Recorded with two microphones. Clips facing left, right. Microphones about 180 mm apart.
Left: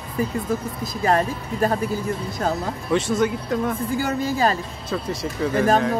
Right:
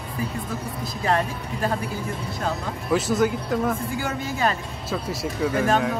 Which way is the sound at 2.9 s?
Centre (ahead or behind).